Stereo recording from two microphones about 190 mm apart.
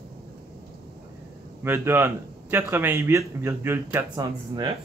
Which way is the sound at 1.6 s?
10° right (ahead or behind).